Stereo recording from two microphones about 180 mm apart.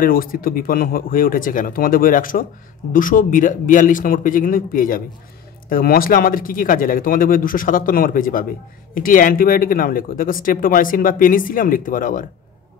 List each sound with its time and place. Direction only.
0.0 s speech: 50° left (ahead or behind)